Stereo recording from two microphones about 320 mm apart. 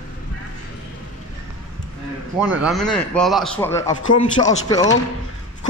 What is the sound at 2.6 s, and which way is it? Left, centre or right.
A man's voice, centre.